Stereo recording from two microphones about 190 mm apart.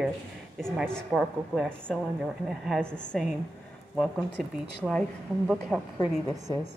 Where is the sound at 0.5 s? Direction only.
Centre (ahead or behind).